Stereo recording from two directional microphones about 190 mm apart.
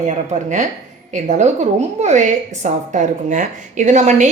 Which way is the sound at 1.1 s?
40° right (ahead or behind).